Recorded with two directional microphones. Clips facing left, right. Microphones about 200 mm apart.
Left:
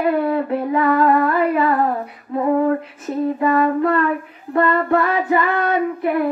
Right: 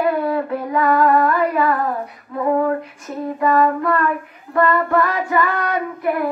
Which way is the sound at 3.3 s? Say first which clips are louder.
Right 2 dB; 25° left (ahead or behind).